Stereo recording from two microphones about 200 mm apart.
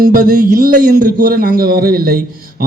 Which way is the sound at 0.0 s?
45° right (ahead or behind).